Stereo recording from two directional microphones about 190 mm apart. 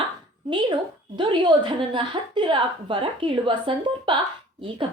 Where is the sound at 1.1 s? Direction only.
25° right (ahead or behind).